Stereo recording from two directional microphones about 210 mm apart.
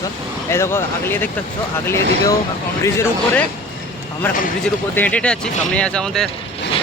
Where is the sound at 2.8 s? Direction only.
10° left (ahead or behind).